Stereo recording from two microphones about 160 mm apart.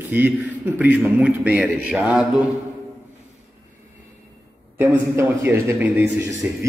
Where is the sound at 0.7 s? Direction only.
10° right (ahead or behind).